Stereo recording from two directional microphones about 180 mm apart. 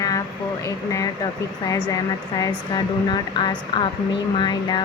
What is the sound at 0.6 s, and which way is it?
Speech, 20° left (ahead or behind).